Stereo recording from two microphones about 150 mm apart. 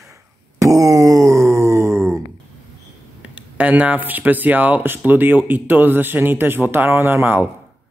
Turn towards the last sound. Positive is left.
turn(degrees=-15)  # may be behind; listen again after turning